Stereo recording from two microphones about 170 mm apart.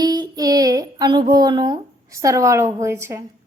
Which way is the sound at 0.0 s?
25° right (ahead or behind).